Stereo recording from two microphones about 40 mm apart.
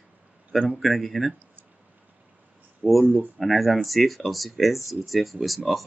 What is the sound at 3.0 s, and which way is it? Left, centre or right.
Speech, right.